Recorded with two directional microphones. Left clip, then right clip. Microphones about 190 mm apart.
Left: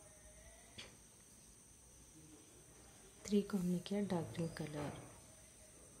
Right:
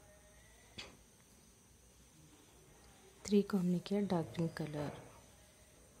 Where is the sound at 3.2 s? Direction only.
30° right (ahead or behind).